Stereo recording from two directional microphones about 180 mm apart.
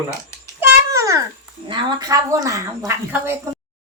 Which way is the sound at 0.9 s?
15° right (ahead or behind).